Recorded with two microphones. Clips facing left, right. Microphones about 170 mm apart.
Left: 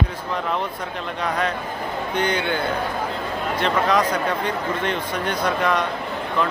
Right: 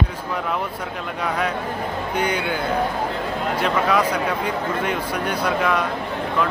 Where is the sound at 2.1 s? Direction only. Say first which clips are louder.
Left 1 dB; 10° right (ahead or behind).